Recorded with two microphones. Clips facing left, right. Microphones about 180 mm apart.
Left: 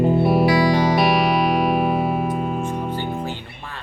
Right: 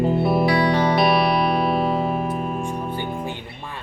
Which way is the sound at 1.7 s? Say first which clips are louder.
Left 1 dB; 15° left (ahead or behind).